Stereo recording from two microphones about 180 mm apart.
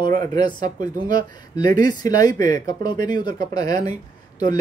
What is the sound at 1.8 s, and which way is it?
Speech, 20° left (ahead or behind).